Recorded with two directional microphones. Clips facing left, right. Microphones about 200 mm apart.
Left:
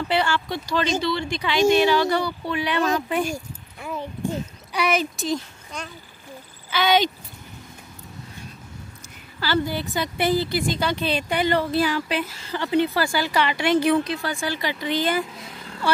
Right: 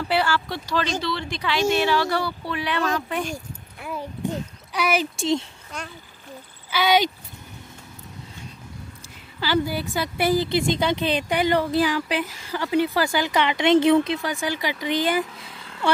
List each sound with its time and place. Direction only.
0.1 s speech: 5° right (ahead or behind)
4.7 s speech: 5° right (ahead or behind)
5.1 s speech: 25° right (ahead or behind)
5.7 s a woman's voice: 5° right (ahead or behind)
9.4 s a woman's voice: 10° right (ahead or behind)